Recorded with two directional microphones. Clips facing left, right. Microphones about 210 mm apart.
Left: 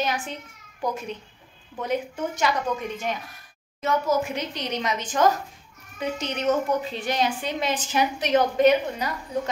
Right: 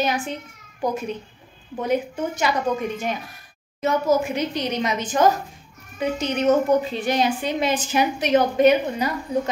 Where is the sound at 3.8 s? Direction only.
5° right (ahead or behind).